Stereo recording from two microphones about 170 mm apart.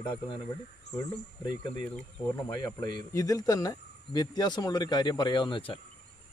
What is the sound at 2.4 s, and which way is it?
Speech, 20° left (ahead or behind).